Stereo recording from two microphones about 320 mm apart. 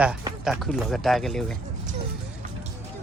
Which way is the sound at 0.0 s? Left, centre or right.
Centre.